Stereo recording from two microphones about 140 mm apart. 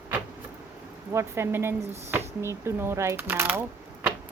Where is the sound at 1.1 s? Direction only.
20° right (ahead or behind).